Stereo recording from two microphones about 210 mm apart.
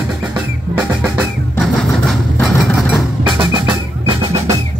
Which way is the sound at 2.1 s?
Centre (ahead or behind).